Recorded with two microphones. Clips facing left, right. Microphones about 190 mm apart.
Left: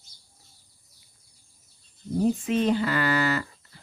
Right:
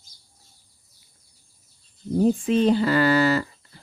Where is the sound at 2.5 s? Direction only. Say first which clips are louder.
Right 4 dB; 30° right (ahead or behind).